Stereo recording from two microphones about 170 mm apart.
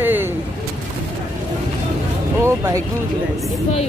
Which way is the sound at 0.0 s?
10° right (ahead or behind).